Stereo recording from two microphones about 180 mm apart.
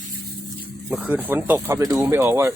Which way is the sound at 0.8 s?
10° right (ahead or behind).